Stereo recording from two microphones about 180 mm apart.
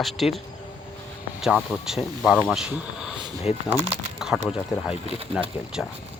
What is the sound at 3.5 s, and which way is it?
Speech, 35° left (ahead or behind).